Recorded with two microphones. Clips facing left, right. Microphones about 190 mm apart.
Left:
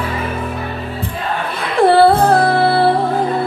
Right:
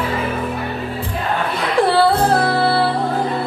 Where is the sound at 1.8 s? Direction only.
55° left (ahead or behind).